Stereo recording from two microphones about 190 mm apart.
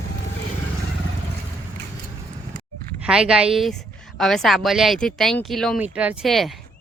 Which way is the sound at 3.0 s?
5° right (ahead or behind).